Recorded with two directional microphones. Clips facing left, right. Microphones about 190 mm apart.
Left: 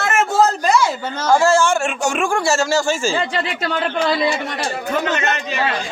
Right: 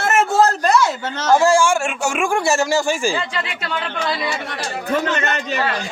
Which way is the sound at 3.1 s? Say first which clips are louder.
Left 4 dB; 40° left (ahead or behind).